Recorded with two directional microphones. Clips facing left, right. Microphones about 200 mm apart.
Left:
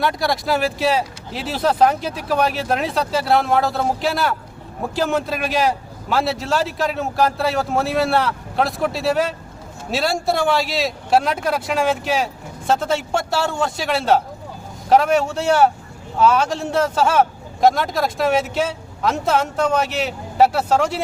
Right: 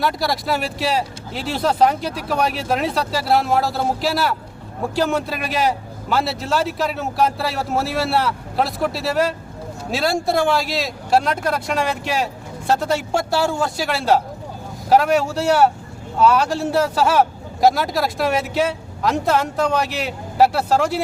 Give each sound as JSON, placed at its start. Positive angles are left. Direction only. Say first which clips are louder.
{"t": 0.0, "sound": "speech", "louder": "left 1 dB", "side_deg": 0}